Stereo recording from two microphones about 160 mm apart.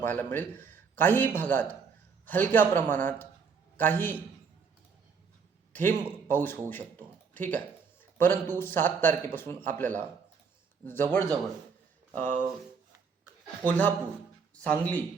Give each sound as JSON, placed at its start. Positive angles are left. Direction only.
{"t": 0.0, "sound": "a man's voice", "side_deg": 10}
{"t": 5.7, "sound": "a man's voice", "side_deg": 10}
{"t": 12.2, "sound": "speech", "side_deg": -55}
{"t": 13.7, "sound": "a man's voice", "side_deg": 10}